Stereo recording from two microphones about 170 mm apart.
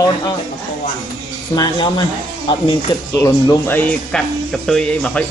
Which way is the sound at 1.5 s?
25° left (ahead or behind).